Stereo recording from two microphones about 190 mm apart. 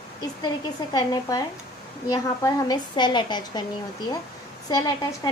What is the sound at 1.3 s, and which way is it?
A woman's voice, 20° left (ahead or behind).